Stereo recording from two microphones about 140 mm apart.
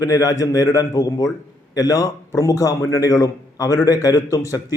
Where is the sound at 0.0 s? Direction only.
25° left (ahead or behind).